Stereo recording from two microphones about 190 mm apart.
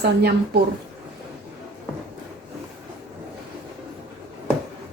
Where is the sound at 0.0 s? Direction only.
60° right (ahead or behind).